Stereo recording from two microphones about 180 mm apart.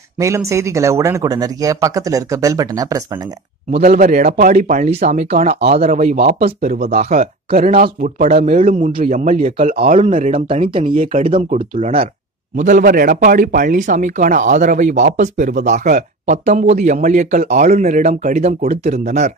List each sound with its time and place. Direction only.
0.2 s speech: 15° right (ahead or behind)
3.7 s speech: 45° right (ahead or behind)
5.6 s speech: 55° right (ahead or behind); by 10.3 s 40° right (ahead or behind)
10.3 s speech: 30° right (ahead or behind)
11.5 s speech: 45° right (ahead or behind)